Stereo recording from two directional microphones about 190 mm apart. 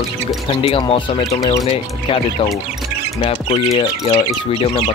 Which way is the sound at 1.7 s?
30° left (ahead or behind).